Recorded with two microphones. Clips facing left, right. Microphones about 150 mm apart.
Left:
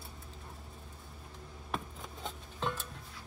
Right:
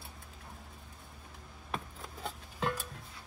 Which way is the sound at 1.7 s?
Centre (ahead or behind).